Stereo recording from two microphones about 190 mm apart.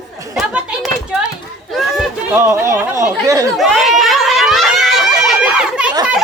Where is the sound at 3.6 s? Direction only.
Centre (ahead or behind).